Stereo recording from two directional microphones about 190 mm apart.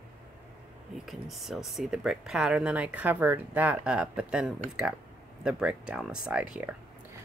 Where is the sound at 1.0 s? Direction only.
Centre (ahead or behind).